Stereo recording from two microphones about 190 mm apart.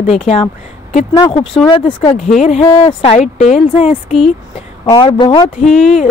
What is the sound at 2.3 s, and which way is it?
Speech, 35° left (ahead or behind).